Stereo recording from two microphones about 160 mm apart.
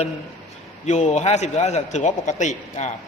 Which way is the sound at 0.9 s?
45° left (ahead or behind).